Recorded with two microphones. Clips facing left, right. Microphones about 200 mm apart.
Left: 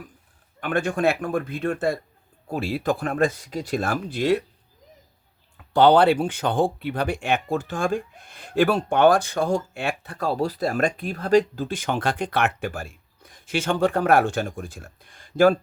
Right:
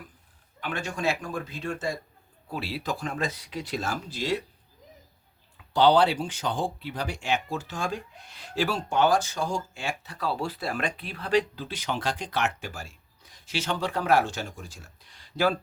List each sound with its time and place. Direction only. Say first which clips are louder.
0.6 s speech: left 8 dB; 55° left (ahead or behind)
5.5 s speech: left 4 dB; 55° left (ahead or behind)